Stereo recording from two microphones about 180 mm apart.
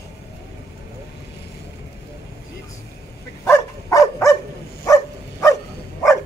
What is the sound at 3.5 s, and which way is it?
Dog, 15° left (ahead or behind).